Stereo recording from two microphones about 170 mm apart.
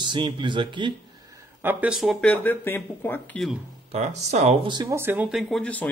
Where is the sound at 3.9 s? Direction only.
40° right (ahead or behind).